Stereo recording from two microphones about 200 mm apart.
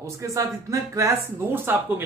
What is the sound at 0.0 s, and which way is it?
Speech, 15° right (ahead or behind).